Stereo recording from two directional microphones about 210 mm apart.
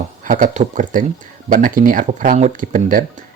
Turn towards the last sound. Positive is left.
turn(degrees=-40)  # may be behind; listen again after turning